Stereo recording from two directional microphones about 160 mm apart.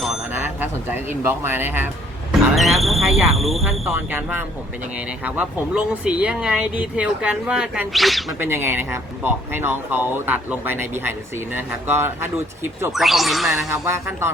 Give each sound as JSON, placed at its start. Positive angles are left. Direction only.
{"t": 0.3, "sound": "speech", "side_deg": -10}
{"t": 2.6, "sound": "speech", "side_deg": 0}
{"t": 3.9, "sound": "speech", "side_deg": -10}
{"t": 8.4, "sound": "speech", "side_deg": -15}
{"t": 12.9, "sound": "speech", "side_deg": 0}
{"t": 13.5, "sound": "speech", "side_deg": -20}